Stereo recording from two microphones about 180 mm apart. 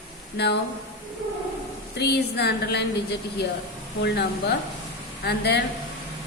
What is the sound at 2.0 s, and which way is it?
A woman's voice, 65° left (ahead or behind).